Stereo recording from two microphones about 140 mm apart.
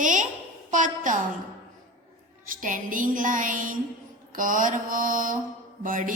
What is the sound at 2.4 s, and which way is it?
Mantra, 75° right (ahead or behind).